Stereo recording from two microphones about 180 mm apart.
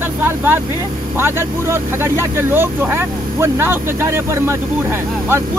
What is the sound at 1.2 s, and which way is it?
Speech, 15° right (ahead or behind).